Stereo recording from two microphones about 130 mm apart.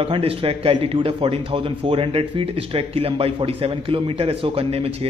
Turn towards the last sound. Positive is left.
turn(degrees=-50)  # may be behind; listen again after turning